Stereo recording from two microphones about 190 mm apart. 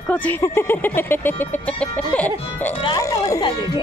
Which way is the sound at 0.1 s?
10° left (ahead or behind).